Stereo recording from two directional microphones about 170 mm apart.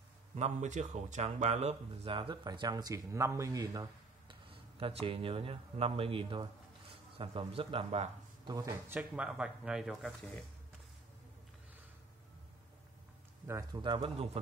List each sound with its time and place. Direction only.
0.4 s speech: 40° right (ahead or behind)
8.5 s speech: 20° right (ahead or behind); by 10.4 s centre (ahead or behind)
13.7 s speech: 25° right (ahead or behind)